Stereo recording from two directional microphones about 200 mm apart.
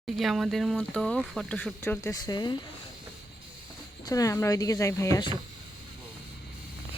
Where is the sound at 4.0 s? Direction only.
20° left (ahead or behind).